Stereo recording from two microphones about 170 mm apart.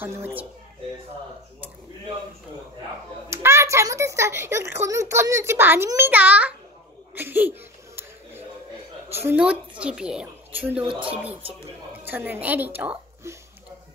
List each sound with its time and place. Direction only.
0.0 s a woman's voice: 15° right (ahead or behind)
3.3 s speech: 15° right (ahead or behind)
7.2 s a sound: 10° right (ahead or behind)
9.1 s a woman's voice: 10° right (ahead or behind)